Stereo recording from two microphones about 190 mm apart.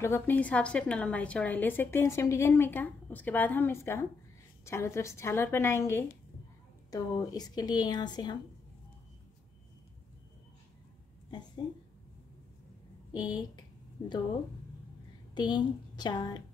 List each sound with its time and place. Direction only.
0.0 s a woman's voice: 10° left (ahead or behind)
11.2 s a sound: 25° left (ahead or behind)
13.1 s speech: 20° left (ahead or behind)
15.3 s a woman's voice: 20° left (ahead or behind)